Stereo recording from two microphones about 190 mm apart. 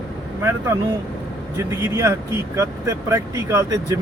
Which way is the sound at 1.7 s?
15° right (ahead or behind).